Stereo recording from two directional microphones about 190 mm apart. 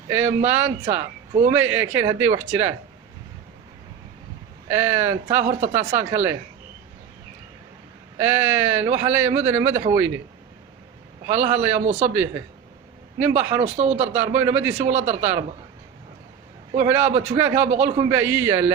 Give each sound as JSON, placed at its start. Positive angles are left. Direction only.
{"t": 0.1, "sound": "a man's voice", "side_deg": -10}
{"t": 4.7, "sound": "a man's voice", "side_deg": -10}
{"t": 5.5, "sound": "speech", "side_deg": -40}
{"t": 5.9, "sound": "a man's voice", "side_deg": -10}
{"t": 8.2, "sound": "a man's voice", "side_deg": -10}
{"t": 11.3, "sound": "a man's voice", "side_deg": -10}
{"t": 13.6, "sound": "speech", "side_deg": -35}
{"t": 14.1, "sound": "a man's voice", "side_deg": -10}
{"t": 14.8, "sound": "speech", "side_deg": -35}
{"t": 16.7, "sound": "a man's voice", "side_deg": -15}